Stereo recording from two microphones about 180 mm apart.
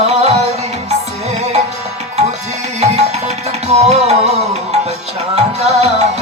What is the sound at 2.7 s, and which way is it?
Music, 35° right (ahead or behind).